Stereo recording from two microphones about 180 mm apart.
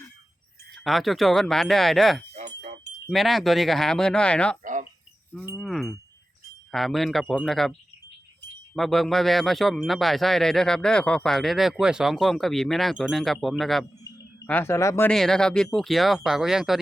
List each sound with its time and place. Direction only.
0.9 s speech: centre (ahead or behind)
4.6 s cricket: 45° right (ahead or behind)
5.5 s wind chime: centre (ahead or behind)
6.7 s speech: centre (ahead or behind)
8.7 s speech: centre (ahead or behind)
14.4 s speech: 10° left (ahead or behind)
15.1 s speech: centre (ahead or behind)